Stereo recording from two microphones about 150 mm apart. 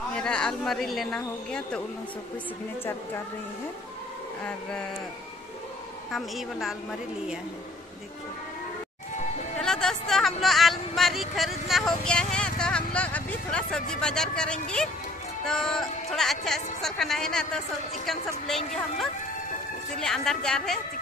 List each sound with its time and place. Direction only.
0.1 s speech: 5° left (ahead or behind)
6.1 s speech: centre (ahead or behind)
9.6 s a sound: 5° left (ahead or behind)
15.4 s speech: 5° left (ahead or behind)
20.0 s speech: 5° left (ahead or behind)